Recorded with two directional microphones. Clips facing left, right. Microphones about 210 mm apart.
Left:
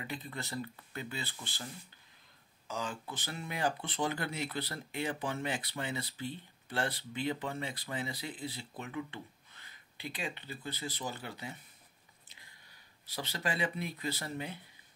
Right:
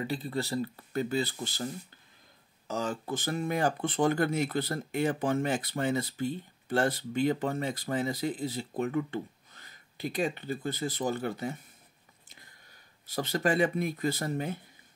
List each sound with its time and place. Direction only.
0.0 s speech: 35° right (ahead or behind)
2.7 s speech: 45° right (ahead or behind)
13.0 s speech: 50° right (ahead or behind)